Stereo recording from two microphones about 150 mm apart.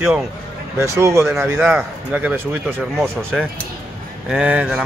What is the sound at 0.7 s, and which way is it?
Speech, 20° right (ahead or behind).